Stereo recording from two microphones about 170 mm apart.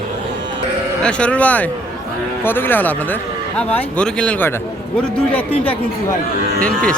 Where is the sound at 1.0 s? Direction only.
5° left (ahead or behind).